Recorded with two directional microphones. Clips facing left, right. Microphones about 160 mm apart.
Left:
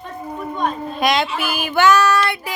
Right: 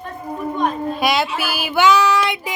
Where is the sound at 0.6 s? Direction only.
5° right (ahead or behind).